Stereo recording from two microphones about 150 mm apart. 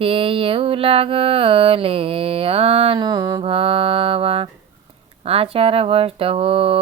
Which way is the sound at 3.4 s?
40° right (ahead or behind).